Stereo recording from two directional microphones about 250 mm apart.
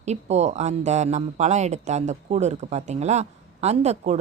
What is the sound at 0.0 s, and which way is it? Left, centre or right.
Speech, right.